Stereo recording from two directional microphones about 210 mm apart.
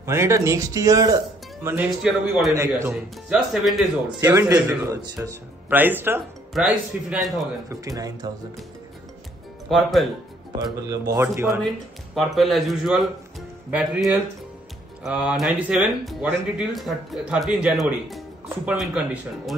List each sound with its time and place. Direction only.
0.0 s a man's voice: 15° right (ahead or behind)
4.3 s a man's voice: 15° right (ahead or behind)
7.8 s a man's voice: 15° right (ahead or behind)
9.7 s speech: centre (ahead or behind)
10.9 s a man's voice: 15° right (ahead or behind)
12.2 s a man's voice: centre (ahead or behind)